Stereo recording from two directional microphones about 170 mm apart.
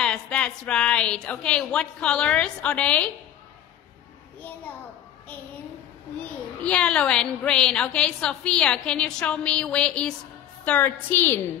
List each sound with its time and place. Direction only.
0.0 s a woman's voice: 5° left (ahead or behind)
6.6 s a woman's voice: 5° left (ahead or behind)